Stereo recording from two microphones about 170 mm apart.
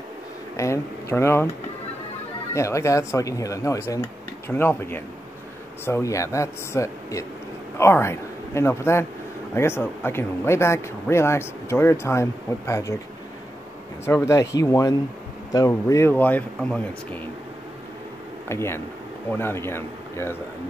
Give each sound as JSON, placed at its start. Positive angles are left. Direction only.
{"t": 0.6, "sound": "speech", "side_deg": 15}
{"t": 2.5, "sound": "a man's voice", "side_deg": 15}
{"t": 14.0, "sound": "speech", "side_deg": 15}
{"t": 18.5, "sound": "speech", "side_deg": 15}